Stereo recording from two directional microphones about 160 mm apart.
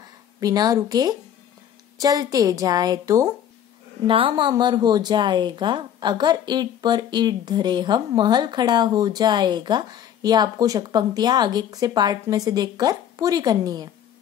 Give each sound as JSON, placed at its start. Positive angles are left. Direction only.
{"t": 0.4, "sound": "speech", "side_deg": -25}
{"t": 4.1, "sound": "speech", "side_deg": -30}